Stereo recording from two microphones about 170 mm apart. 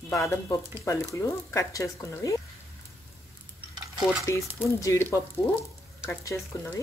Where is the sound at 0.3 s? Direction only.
15° left (ahead or behind).